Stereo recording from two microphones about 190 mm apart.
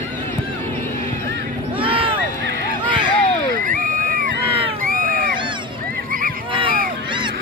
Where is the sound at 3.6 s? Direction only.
45° right (ahead or behind).